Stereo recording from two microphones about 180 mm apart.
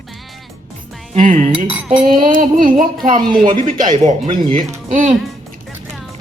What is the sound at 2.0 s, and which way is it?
Speech, 45° right (ahead or behind).